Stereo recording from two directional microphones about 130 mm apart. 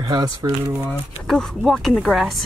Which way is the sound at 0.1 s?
30° right (ahead or behind).